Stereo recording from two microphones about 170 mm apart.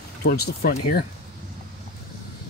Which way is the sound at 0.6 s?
55° left (ahead or behind).